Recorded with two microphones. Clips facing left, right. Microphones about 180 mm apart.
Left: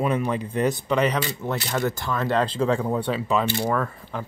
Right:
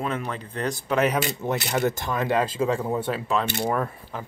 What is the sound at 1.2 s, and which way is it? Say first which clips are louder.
Speech: right 1 dB; 20° right (ahead or behind).